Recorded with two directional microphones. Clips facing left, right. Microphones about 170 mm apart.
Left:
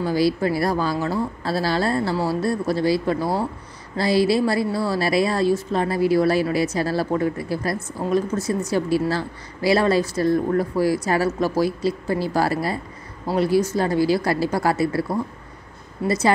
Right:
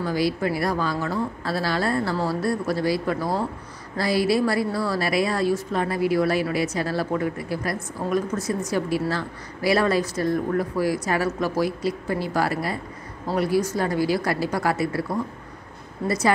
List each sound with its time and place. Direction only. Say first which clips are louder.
0.0 s a woman's voice: left 3 dB; 30° left (ahead or behind)
16.1 s a woman's voice: left 2 dB; 25° left (ahead or behind)